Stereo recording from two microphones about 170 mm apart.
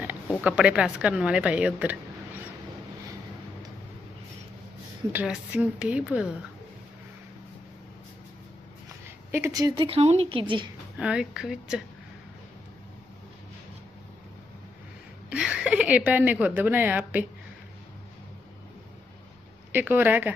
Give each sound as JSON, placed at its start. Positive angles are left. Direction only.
{"t": 0.4, "sound": "a woman's voice", "side_deg": -5}
{"t": 5.1, "sound": "a woman's voice", "side_deg": -5}
{"t": 9.3, "sound": "speech", "side_deg": -20}
{"t": 10.9, "sound": "a woman's voice", "side_deg": -5}
{"t": 15.3, "sound": "a woman's voice", "side_deg": -5}
{"t": 19.7, "sound": "speech", "side_deg": -10}